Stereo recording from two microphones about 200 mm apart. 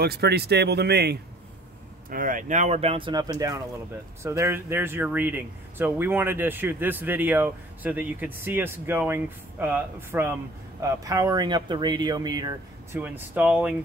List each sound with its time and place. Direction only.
0.0 s speech: 55° right (ahead or behind)
2.0 s speech: 45° right (ahead or behind); by 13.0 s 20° right (ahead or behind)
13.0 s speech: 10° right (ahead or behind)